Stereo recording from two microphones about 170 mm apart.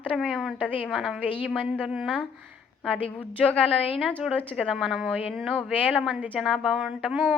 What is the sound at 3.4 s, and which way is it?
Speech, 5° left (ahead or behind).